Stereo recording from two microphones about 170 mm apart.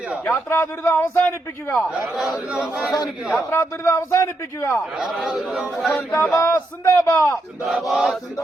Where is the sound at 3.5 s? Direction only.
15° left (ahead or behind).